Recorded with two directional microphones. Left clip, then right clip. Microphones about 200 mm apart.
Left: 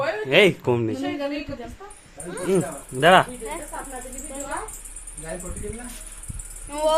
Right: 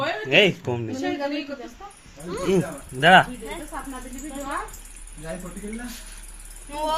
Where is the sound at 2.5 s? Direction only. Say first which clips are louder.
Left 1 dB; 20° left (ahead or behind).